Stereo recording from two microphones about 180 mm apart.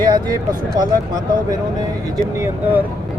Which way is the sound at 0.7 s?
20° right (ahead or behind).